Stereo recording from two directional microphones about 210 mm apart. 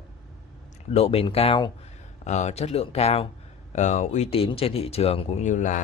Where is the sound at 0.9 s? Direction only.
25° left (ahead or behind).